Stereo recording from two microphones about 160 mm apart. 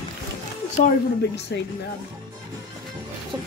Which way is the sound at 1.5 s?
90° left.